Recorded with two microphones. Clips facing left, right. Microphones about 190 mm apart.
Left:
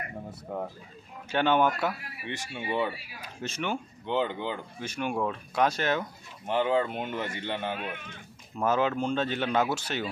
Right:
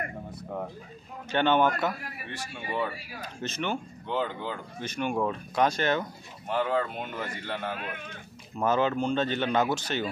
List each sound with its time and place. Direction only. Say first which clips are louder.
1.3 s speech: right 1 dB; 5° left (ahead or behind)
2.2 s speech: left 5 dB; 20° left (ahead or behind)
3.4 s speech: even; 5° left (ahead or behind)
4.1 s speech: left 2 dB; 20° left (ahead or behind)
4.7 s speech: right 4 dB; 5° left (ahead or behind)
6.4 s speech: left 2 dB; 25° left (ahead or behind)
8.5 s speech: right 1 dB; 5° left (ahead or behind)